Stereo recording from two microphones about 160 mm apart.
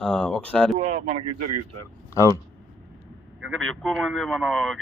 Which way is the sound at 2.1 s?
20° left (ahead or behind).